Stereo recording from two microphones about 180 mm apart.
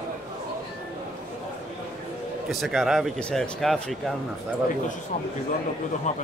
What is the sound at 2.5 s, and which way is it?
Speech, centre (ahead or behind).